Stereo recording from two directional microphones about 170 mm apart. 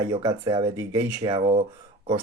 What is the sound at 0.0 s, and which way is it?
Speech, 25° right (ahead or behind).